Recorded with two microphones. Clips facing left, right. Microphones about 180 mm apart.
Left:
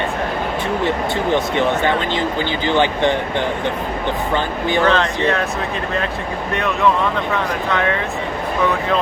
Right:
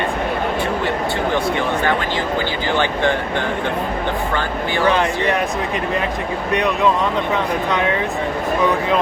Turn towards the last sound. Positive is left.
turn(degrees=-15)  # may be behind; listen again after turning